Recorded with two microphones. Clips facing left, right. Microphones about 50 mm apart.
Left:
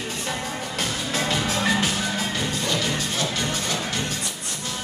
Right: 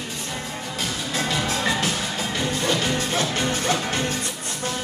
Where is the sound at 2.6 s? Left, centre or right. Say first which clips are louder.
Right 4 dB; right.